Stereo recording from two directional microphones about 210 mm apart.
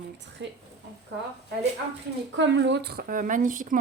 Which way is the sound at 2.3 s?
60° right (ahead or behind).